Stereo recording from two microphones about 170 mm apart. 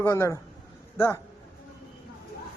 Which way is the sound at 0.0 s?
15° left (ahead or behind).